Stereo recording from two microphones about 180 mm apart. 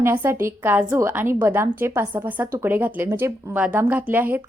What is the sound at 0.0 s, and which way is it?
A woman's voice, 10° right (ahead or behind).